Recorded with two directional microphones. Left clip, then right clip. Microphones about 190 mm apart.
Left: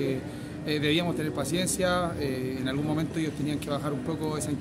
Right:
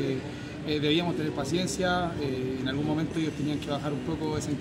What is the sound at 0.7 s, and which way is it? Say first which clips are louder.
Speech: even; 15° left (ahead or behind).